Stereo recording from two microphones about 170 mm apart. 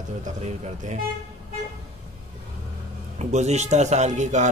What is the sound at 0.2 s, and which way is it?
Speech, 40° right (ahead or behind).